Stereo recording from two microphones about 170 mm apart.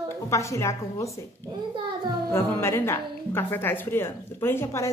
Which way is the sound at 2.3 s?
15° left (ahead or behind).